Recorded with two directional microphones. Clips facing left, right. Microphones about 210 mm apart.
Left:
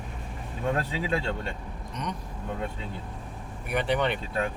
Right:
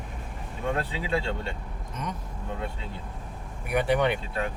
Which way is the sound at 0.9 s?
40° left (ahead or behind).